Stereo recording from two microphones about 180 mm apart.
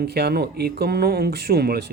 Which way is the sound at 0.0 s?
60° right (ahead or behind).